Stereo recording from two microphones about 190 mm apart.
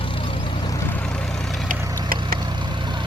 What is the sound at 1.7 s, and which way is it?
Vehicle, 50° right (ahead or behind).